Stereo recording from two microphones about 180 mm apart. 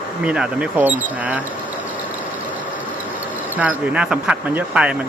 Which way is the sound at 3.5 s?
10° right (ahead or behind).